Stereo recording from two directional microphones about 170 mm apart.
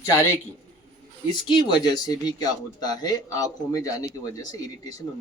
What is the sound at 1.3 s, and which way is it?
Speech, 25° left (ahead or behind).